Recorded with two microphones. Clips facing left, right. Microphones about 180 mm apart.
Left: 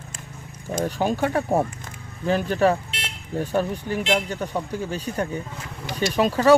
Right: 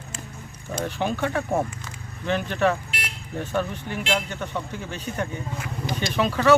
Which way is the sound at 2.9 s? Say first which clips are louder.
Left 2 dB; 25° left (ahead or behind).